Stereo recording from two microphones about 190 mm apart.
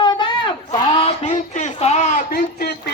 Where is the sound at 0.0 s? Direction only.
25° left (ahead or behind).